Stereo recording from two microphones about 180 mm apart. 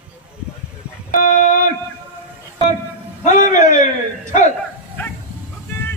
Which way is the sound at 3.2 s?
45° left (ahead or behind).